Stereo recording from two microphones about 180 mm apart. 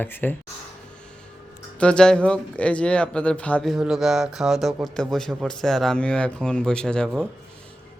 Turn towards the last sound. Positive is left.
turn(degrees=5)  # may be behind; listen again after turning